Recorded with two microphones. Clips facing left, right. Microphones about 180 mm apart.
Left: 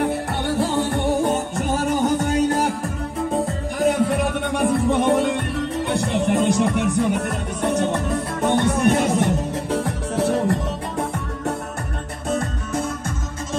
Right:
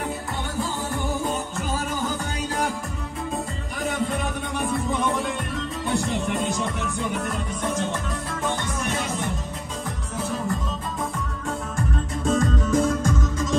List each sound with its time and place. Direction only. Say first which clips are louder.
0.0 s music: left 7 dB; 75° left (ahead or behind)
2.1 s music: left 10 dB; 40° left (ahead or behind)
4.1 s music: left 6 dB; 70° left (ahead or behind)
7.0 s music: left 6 dB; 40° left (ahead or behind)
8.5 s music: left 11 dB; 65° left (ahead or behind)